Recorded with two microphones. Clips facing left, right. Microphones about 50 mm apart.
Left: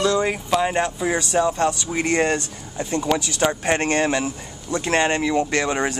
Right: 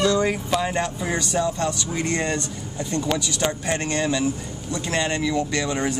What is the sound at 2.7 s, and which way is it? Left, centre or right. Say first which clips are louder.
Speech: left 3 dB; left.